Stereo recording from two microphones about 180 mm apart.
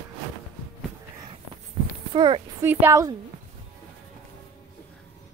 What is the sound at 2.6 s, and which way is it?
Speech, 15° right (ahead or behind).